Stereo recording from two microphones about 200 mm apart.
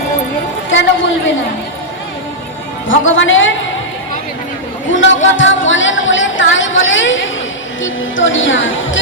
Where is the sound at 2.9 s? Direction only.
70° left (ahead or behind).